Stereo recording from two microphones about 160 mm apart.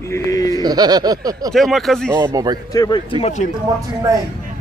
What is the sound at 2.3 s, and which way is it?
Speech, 20° right (ahead or behind).